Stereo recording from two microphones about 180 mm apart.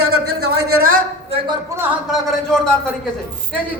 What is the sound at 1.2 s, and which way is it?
Speech, 25° right (ahead or behind).